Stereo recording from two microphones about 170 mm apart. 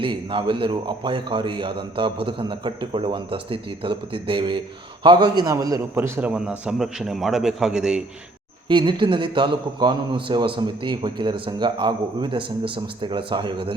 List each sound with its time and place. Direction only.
0.0 s a man's voice: 30° right (ahead or behind); by 8.0 s 5° right (ahead or behind)
8.6 s a man's voice: 25° right (ahead or behind)